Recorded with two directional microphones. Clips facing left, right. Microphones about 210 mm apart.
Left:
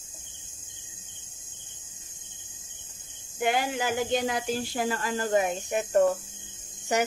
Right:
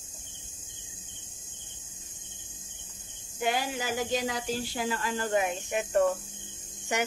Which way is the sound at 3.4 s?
55° left (ahead or behind).